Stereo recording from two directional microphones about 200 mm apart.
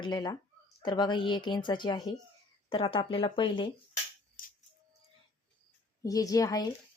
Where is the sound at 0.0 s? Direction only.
20° left (ahead or behind).